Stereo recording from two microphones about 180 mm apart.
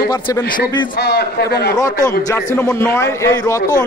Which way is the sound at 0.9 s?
65° left (ahead or behind).